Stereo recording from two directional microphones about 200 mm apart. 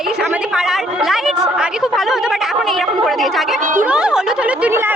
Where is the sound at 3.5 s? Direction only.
40° right (ahead or behind).